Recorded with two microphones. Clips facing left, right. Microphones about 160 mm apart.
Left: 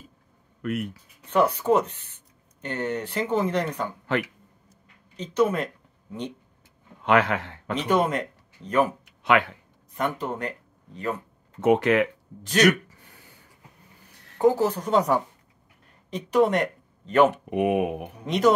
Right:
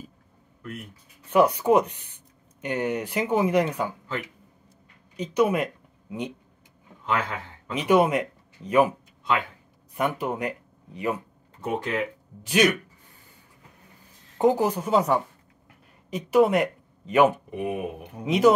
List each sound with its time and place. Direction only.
0.6 s speech: 75° left (ahead or behind)
1.3 s speech: 10° right (ahead or behind)
5.1 s speech: 10° right (ahead or behind)
7.0 s speech: 75° left (ahead or behind)
7.9 s speech: 10° right (ahead or behind)
9.0 s a sound: 75° left (ahead or behind)
9.9 s speech: 10° right (ahead or behind)
11.6 s speech: 80° left
12.6 s a sound: 75° left (ahead or behind)
14.4 s speech: 15° right (ahead or behind)
17.5 s speech: 70° left (ahead or behind)
18.2 s speech: 5° right (ahead or behind)